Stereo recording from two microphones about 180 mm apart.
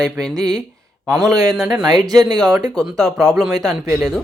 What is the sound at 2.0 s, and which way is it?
Speech, 20° right (ahead or behind).